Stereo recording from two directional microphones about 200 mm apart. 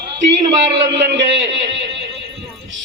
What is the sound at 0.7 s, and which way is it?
Speech, 60° right (ahead or behind).